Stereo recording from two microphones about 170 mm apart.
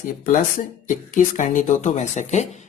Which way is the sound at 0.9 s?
50° left (ahead or behind).